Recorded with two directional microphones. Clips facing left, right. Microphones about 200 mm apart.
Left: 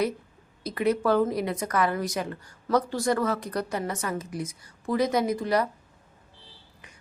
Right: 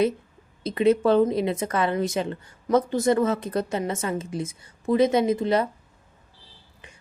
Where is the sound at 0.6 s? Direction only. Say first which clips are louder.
Right 5 dB; 25° right (ahead or behind).